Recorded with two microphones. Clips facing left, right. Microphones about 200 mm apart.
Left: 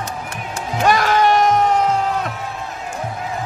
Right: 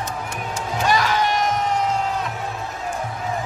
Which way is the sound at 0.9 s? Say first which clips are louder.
Left 6 dB; 55° left (ahead or behind).